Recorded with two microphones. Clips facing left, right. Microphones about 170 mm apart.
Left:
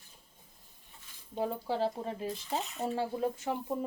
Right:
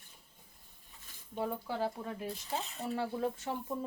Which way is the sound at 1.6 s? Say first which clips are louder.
Left 4 dB; 25° left (ahead or behind).